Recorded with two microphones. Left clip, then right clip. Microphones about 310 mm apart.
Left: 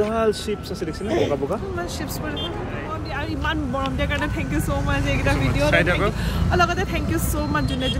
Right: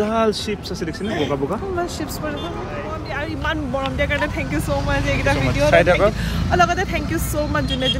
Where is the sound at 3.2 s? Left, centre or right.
Centre.